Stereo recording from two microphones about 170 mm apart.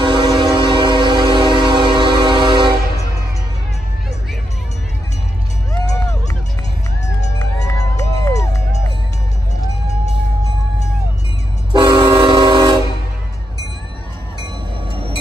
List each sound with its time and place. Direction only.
0.0 s train: 25° right (ahead or behind)
5.7 s run: 20° left (ahead or behind)
8.0 s music: 20° left (ahead or behind)
11.7 s train: 25° right (ahead or behind)
14.4 s train: 30° right (ahead or behind)